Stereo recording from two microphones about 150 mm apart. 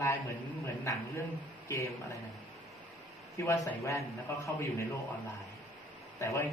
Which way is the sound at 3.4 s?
20° left (ahead or behind).